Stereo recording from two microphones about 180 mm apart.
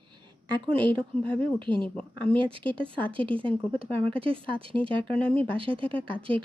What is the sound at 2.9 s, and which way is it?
Speech, 10° left (ahead or behind).